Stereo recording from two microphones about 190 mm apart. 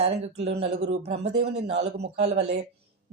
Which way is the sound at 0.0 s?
30° right (ahead or behind).